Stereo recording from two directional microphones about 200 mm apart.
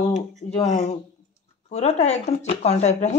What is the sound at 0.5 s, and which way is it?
Speech, 30° left (ahead or behind).